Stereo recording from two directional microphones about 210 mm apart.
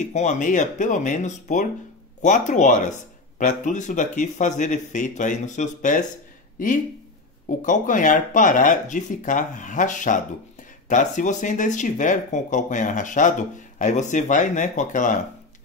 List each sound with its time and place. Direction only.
0.0 s speech: 35° left (ahead or behind)